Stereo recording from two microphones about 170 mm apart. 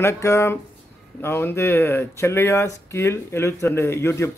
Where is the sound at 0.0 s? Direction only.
15° left (ahead or behind).